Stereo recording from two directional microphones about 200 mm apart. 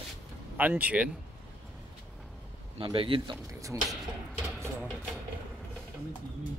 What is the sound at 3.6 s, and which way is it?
Speech, 15° right (ahead or behind).